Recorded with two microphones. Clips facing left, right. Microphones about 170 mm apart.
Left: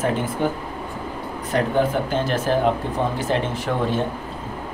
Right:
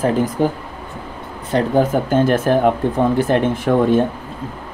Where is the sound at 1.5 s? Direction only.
45° right (ahead or behind).